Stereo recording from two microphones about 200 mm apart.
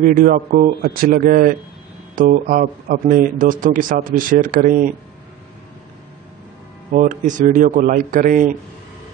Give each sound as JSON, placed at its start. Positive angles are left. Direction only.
{"t": 0.0, "sound": "speech", "side_deg": -45}
{"t": 6.9, "sound": "a man's voice", "side_deg": -40}